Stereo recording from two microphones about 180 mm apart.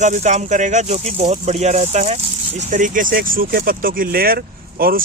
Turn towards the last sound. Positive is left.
turn(degrees=-55)  # may be behind; listen again after turning